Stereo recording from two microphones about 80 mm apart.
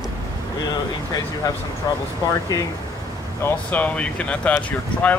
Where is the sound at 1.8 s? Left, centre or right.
Left.